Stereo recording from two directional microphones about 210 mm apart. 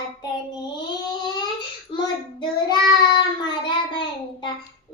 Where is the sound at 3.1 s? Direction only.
20° left (ahead or behind).